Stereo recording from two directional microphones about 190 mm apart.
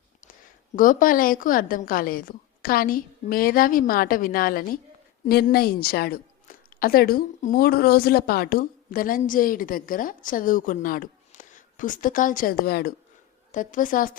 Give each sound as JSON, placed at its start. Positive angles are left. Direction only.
{"t": 0.8, "sound": "a woman's voice", "side_deg": 45}
{"t": 13.5, "sound": "a woman's voice", "side_deg": 45}